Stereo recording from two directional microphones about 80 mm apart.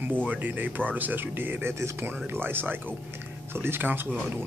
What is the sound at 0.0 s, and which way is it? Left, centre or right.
Speech, right.